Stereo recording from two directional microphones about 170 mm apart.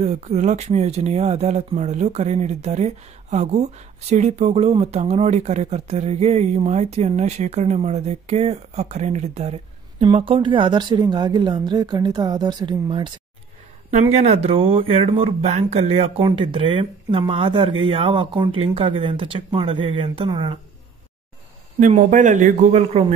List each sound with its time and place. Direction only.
0.0 s speech: 40° right (ahead or behind)
13.8 s speech: 40° right (ahead or behind)
21.7 s a man's voice: 50° right (ahead or behind)